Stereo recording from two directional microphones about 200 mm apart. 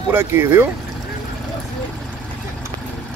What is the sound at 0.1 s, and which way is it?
Speech, 10° right (ahead or behind).